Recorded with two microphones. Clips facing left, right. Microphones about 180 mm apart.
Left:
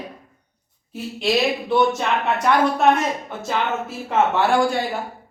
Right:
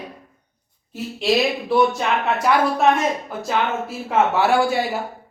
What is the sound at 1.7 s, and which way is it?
A woman's voice, centre (ahead or behind).